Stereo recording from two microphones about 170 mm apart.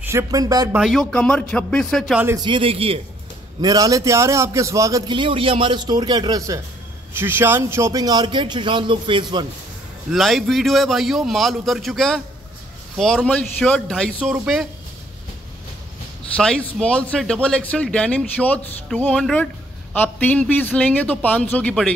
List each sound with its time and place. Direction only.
0.0 s a man's voice: 15° right (ahead or behind)
0.7 s a man's voice: centre (ahead or behind)
2.2 s a man's voice: 25° right (ahead or behind)
3.6 s a man's voice: 20° right (ahead or behind)
10.1 s a man's voice: centre (ahead or behind)
16.7 s speech: 5° left (ahead or behind)